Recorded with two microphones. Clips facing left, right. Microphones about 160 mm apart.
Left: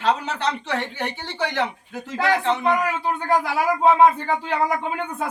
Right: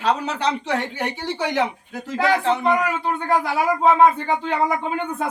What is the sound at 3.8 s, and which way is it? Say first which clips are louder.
Speech: even; 5° left (ahead or behind).